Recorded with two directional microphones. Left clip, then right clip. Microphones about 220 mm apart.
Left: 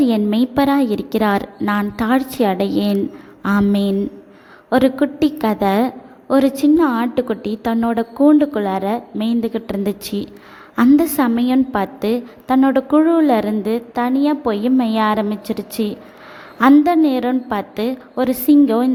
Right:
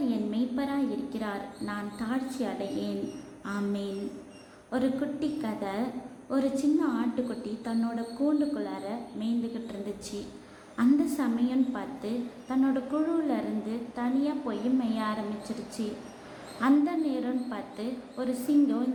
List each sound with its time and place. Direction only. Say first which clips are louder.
0.0 s a woman's voice: left 14 dB; 50° left (ahead or behind)
16.6 s a woman's voice: left 14 dB; 50° left (ahead or behind)